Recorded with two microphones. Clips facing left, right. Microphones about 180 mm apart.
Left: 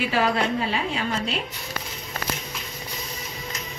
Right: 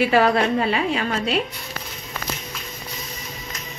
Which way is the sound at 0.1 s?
55° right (ahead or behind).